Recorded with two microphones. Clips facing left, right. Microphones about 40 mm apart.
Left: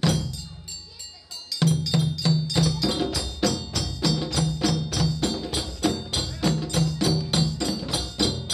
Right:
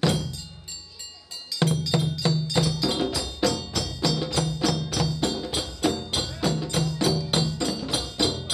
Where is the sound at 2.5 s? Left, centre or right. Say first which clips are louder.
Even; centre.